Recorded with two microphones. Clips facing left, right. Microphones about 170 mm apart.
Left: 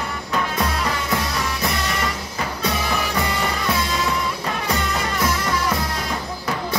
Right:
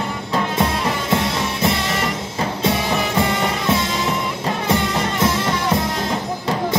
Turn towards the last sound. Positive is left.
turn(degrees=-25)  # may be behind; listen again after turning